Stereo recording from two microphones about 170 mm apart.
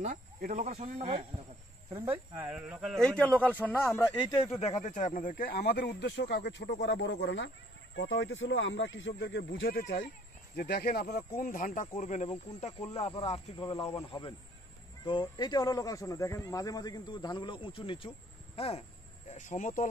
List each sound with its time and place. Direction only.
0.0 s speech: 50° right (ahead or behind); by 2.1 s 30° right (ahead or behind)
2.3 s speech: 10° right (ahead or behind); by 4.6 s 15° left (ahead or behind)
4.6 s speech: 45° left (ahead or behind); by 10.0 s 75° left (ahead or behind)
10.5 s a man's voice: 60° left (ahead or behind); by 18.9 s 35° left (ahead or behind)
19.3 s speech: 50° left (ahead or behind)